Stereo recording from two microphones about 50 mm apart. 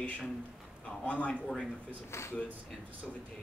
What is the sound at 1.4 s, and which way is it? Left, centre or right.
Speech, centre.